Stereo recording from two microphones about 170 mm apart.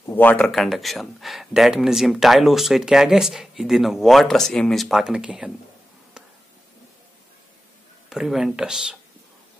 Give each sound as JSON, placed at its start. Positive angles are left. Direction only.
{"t": 0.0, "sound": "speech", "side_deg": 10}
{"t": 8.1, "sound": "speech", "side_deg": 0}